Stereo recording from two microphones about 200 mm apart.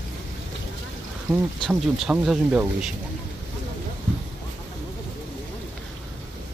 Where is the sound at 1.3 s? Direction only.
Centre (ahead or behind).